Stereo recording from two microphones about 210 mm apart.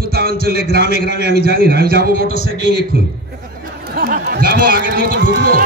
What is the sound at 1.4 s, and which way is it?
Speech, 45° right (ahead or behind).